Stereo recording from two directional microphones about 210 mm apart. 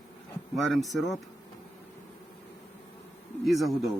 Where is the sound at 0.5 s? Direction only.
Centre (ahead or behind).